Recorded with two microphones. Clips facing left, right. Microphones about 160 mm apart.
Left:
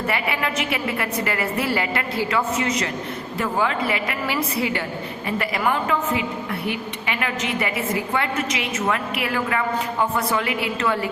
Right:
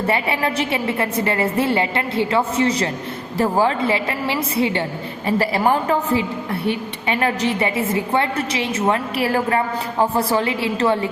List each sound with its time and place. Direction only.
0.1 s a woman's voice: 30° right (ahead or behind)